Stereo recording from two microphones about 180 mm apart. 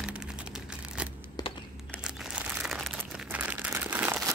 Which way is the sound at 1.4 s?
20° left (ahead or behind).